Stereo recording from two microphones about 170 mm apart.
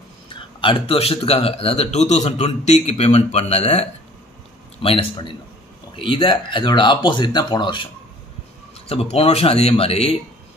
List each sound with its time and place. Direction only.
0.6 s a man's voice: 35° left (ahead or behind)
4.8 s a man's voice: 35° left (ahead or behind)